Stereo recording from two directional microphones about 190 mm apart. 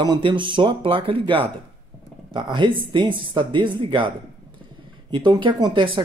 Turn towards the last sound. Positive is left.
turn(degrees=-25)  # may be behind; listen again after turning